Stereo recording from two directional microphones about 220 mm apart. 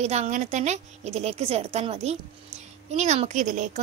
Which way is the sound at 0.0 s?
30° right (ahead or behind).